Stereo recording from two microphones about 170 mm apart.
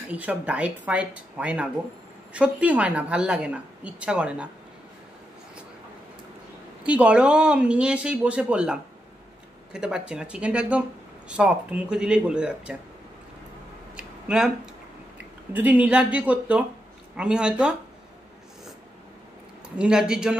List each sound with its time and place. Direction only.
0.1 s a woman's voice: 10° right (ahead or behind)
6.8 s a woman's voice: 5° right (ahead or behind)
13.9 s a sound: 5° right (ahead or behind)
15.5 s a woman's voice: 10° right (ahead or behind)
19.8 s speech: 5° right (ahead or behind)